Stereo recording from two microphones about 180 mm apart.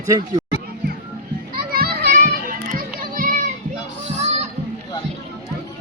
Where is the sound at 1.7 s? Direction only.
55° right (ahead or behind).